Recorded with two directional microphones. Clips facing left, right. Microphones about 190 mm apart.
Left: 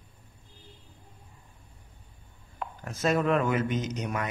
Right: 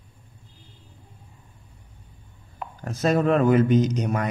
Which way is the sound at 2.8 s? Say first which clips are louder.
Right 5 dB; 35° right (ahead or behind).